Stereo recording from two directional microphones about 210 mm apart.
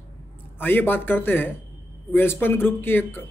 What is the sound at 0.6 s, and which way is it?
Speech, 10° left (ahead or behind).